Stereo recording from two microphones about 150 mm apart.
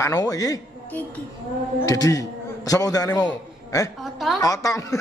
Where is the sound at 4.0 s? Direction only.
Centre (ahead or behind).